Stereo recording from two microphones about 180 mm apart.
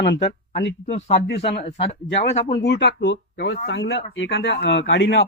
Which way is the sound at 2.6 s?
70° left (ahead or behind).